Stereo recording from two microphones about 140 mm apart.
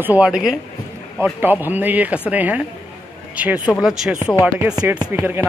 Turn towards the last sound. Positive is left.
turn(degrees=-20)  # may be behind; listen again after turning